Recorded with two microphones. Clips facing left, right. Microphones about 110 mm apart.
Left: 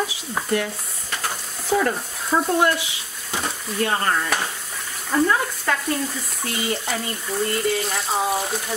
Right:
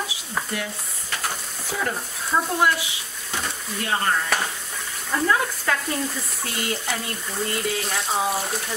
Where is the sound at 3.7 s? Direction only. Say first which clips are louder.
Left 2 dB; centre (ahead or behind).